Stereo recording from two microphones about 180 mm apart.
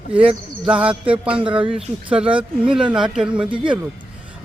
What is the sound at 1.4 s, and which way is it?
Speech, 30° right (ahead or behind).